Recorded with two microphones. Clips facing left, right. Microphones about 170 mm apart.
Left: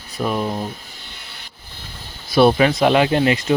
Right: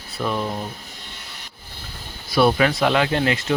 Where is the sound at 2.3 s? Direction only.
25° left (ahead or behind).